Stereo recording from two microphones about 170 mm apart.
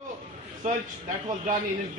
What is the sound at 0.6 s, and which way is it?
Speech, 45° right (ahead or behind).